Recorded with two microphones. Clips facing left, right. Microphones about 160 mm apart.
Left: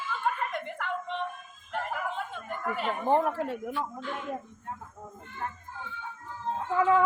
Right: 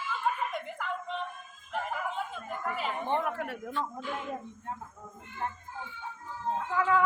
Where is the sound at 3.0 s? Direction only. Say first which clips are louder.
Left 7 dB; 35° left (ahead or behind).